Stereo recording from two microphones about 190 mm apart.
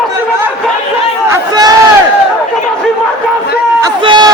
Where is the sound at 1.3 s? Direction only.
20° right (ahead or behind).